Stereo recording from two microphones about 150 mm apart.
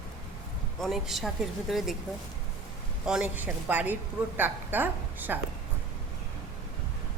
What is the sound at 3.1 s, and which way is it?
A woman's voice, 10° right (ahead or behind).